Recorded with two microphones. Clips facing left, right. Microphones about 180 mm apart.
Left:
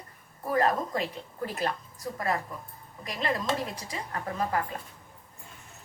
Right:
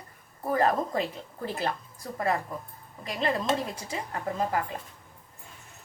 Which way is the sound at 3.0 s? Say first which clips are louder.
Right 2 dB; 25° right (ahead or behind).